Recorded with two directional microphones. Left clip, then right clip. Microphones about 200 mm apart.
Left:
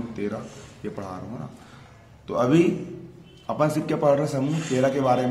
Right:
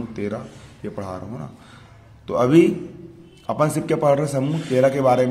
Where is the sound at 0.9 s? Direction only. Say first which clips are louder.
Right 6 dB; 35° right (ahead or behind).